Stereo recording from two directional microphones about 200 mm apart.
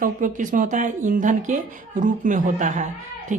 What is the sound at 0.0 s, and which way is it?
Speech, 40° right (ahead or behind).